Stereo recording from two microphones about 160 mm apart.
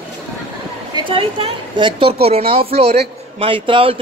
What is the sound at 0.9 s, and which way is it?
A woman's voice, 35° right (ahead or behind).